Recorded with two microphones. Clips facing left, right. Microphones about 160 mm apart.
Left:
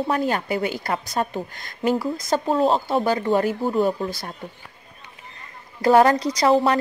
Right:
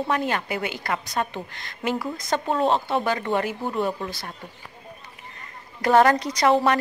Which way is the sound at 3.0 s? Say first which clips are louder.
Left 4 dB; 35° left (ahead or behind).